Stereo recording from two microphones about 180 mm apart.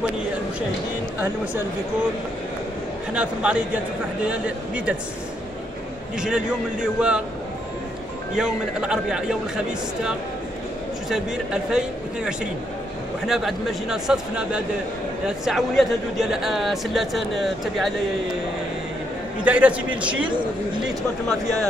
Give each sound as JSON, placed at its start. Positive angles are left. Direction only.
{"t": 3.1, "sound": "a man's voice", "side_deg": -5}
{"t": 6.1, "sound": "a man's voice", "side_deg": -5}
{"t": 8.4, "sound": "a man's voice", "side_deg": -5}
{"t": 11.1, "sound": "a man's voice", "side_deg": -5}
{"t": 19.4, "sound": "a man's voice", "side_deg": -5}